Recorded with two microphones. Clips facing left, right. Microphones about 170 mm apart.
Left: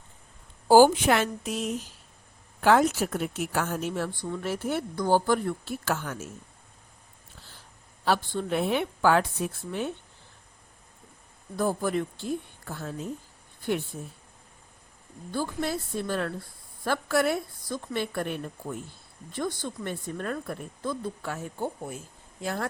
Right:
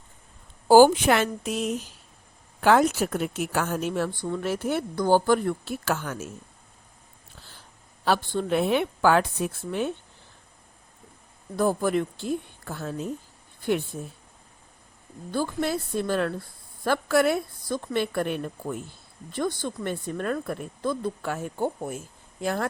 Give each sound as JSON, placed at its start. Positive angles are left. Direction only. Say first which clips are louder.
{"t": 0.7, "sound": "a woman's voice", "louder": "right 2 dB", "side_deg": -75}
{"t": 8.0, "sound": "a woman's voice", "louder": "right 2 dB", "side_deg": -85}
{"t": 11.5, "sound": "a woman's voice", "louder": "right 3 dB", "side_deg": -85}
{"t": 15.3, "sound": "a woman's voice", "louder": "right 3 dB", "side_deg": -90}
{"t": 19.4, "sound": "speech", "louder": "right 3 dB", "side_deg": -90}